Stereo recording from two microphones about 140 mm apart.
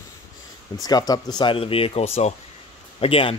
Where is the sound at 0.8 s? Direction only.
30° left (ahead or behind).